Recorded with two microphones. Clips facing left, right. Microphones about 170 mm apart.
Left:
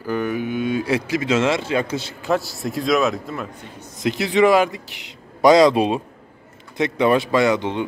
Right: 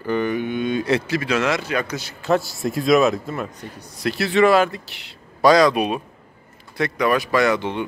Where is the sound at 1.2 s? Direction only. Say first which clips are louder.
Left 2 dB; 25° left (ahead or behind).